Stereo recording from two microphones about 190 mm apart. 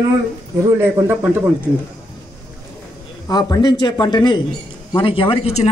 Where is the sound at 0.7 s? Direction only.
10° right (ahead or behind).